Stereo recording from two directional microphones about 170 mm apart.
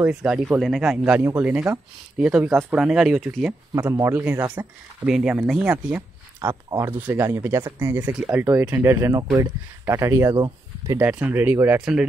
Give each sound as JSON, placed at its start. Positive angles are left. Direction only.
{"t": 0.0, "sound": "speech", "side_deg": -5}
{"t": 3.7, "sound": "speech", "side_deg": -20}
{"t": 11.0, "sound": "speech", "side_deg": -10}